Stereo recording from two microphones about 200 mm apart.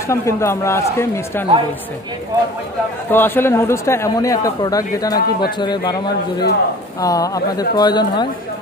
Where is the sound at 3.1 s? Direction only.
10° left (ahead or behind).